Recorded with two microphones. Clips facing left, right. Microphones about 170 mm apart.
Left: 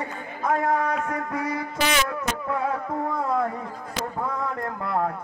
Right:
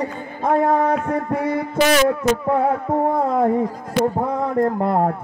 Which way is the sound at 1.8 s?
50° right (ahead or behind).